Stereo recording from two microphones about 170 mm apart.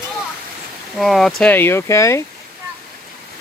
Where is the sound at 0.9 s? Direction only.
Centre (ahead or behind); by 2.2 s 15° left (ahead or behind).